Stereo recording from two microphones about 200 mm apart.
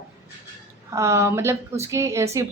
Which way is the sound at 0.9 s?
15° right (ahead or behind).